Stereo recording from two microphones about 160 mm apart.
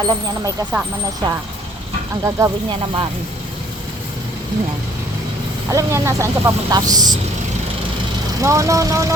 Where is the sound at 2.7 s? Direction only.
35° right (ahead or behind).